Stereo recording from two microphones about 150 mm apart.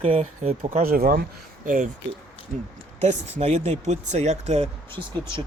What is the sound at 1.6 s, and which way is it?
Speech, 60° right (ahead or behind).